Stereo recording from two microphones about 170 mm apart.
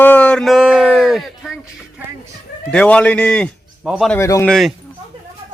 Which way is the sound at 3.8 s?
5° right (ahead or behind).